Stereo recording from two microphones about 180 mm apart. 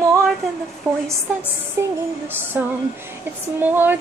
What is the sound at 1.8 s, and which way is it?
Female singing, 15° right (ahead or behind).